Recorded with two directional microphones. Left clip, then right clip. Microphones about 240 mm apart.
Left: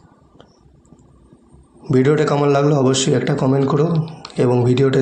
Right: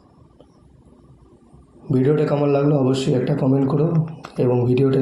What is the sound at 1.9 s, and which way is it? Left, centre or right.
Speech, centre.